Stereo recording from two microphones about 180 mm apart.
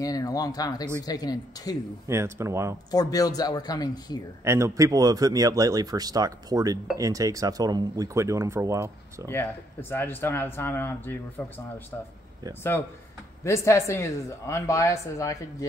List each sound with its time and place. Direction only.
0.0 s speech: 20° left (ahead or behind)
2.0 s speech: 15° right (ahead or behind)
2.9 s speech: 20° left (ahead or behind)
4.5 s speech: 15° right (ahead or behind)
9.3 s speech: 15° left (ahead or behind)
13.4 s speech: 15° left (ahead or behind)